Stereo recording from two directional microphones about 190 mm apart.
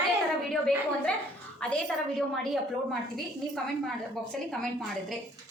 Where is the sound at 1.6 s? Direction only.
5° left (ahead or behind).